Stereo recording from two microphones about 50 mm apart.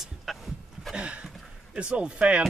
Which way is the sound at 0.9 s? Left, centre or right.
Right.